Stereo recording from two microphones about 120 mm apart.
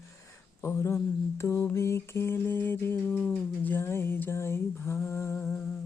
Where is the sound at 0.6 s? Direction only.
20° left (ahead or behind).